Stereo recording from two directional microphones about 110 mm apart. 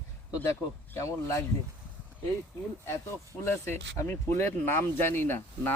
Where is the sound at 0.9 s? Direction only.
25° left (ahead or behind).